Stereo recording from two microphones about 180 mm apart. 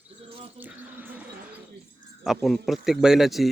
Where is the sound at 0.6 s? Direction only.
10° right (ahead or behind).